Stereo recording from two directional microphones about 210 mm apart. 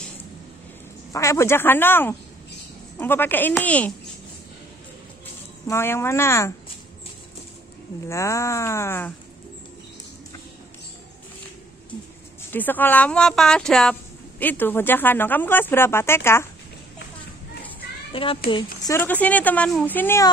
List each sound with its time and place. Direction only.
1.1 s speech: 15° left (ahead or behind)
5.7 s speech: 10° left (ahead or behind)
8.1 s speech: 15° left (ahead or behind)
12.4 s speech: 10° left (ahead or behind)
18.1 s a child's voice: 25° left (ahead or behind)
18.9 s speech: 10° left (ahead or behind)